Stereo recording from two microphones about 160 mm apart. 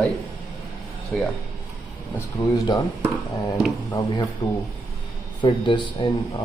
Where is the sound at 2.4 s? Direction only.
20° left (ahead or behind).